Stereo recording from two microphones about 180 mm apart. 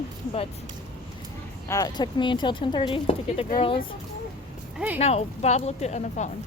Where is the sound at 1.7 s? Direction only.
20° left (ahead or behind).